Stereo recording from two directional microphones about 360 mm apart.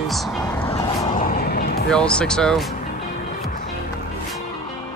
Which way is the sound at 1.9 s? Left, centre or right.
Centre.